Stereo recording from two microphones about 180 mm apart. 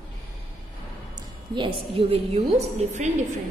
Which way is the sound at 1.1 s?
25° right (ahead or behind).